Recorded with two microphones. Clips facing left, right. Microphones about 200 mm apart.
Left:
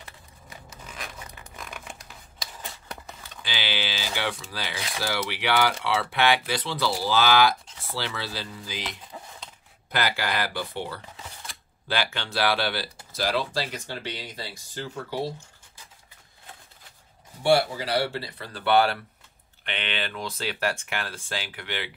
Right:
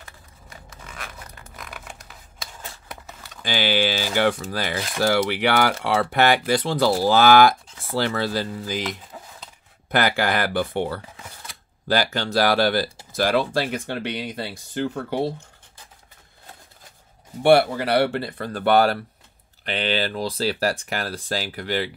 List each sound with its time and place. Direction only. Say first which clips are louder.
3.4 s speech: right 10 dB; 45° right (ahead or behind)
9.8 s speech: right 6 dB; 50° right (ahead or behind)
11.9 s speech: right 7 dB; 40° right (ahead or behind); by 15.3 s 60° right (ahead or behind)
17.4 s speech: right 6 dB; 60° right (ahead or behind); by 21.9 s 40° right (ahead or behind)